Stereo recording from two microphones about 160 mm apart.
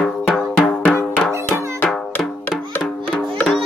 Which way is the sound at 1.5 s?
15° right (ahead or behind).